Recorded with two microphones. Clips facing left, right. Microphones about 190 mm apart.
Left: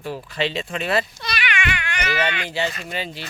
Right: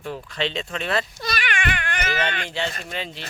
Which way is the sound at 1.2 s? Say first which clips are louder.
Even; 45° right (ahead or behind).